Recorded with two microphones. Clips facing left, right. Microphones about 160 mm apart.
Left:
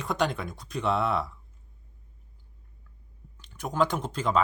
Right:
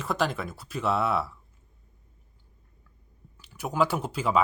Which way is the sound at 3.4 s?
5° right (ahead or behind).